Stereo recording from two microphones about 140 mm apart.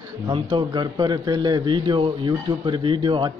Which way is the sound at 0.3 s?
35° right (ahead or behind).